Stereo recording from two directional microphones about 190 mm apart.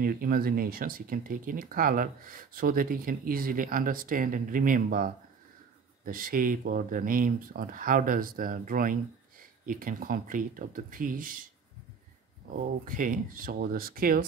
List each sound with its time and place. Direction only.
0.0 s speech: 50° right (ahead or behind)
12.5 s speech: 45° right (ahead or behind)